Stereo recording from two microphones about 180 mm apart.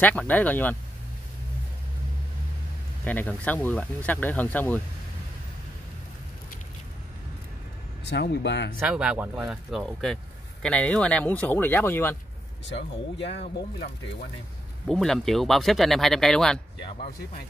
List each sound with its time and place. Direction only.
0.0 s speech: 5° left (ahead or behind)
3.1 s speech: 10° left (ahead or behind)
8.0 s speech: 70° left (ahead or behind)
8.7 s speech: 5° right (ahead or behind); by 12.2 s 15° left (ahead or behind)
12.6 s speech: 75° left (ahead or behind)
14.9 s speech: centre (ahead or behind)